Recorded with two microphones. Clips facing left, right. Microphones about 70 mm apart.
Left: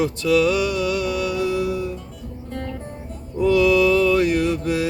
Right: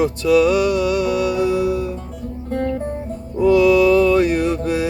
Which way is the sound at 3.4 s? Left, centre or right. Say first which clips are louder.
Right 3 dB; centre.